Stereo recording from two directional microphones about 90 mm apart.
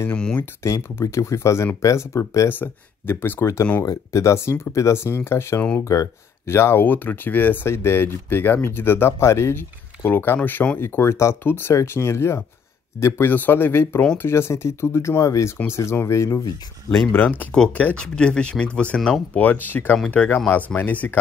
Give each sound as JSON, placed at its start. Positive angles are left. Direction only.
{"t": 0.1, "sound": "speech", "side_deg": 10}
{"t": 0.7, "sound": "speech", "side_deg": 35}
{"t": 10.8, "sound": "speech", "side_deg": 30}
{"t": 17.1, "sound": "speech", "side_deg": 20}